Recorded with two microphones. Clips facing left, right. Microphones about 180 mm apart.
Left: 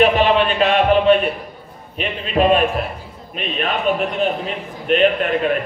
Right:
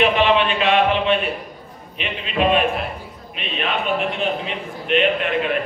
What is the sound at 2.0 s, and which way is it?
A man's voice, 40° left (ahead or behind).